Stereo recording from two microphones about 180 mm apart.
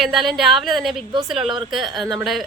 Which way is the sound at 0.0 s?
Centre (ahead or behind).